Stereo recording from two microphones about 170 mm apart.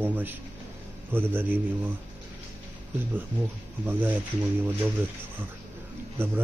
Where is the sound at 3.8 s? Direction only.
10° right (ahead or behind).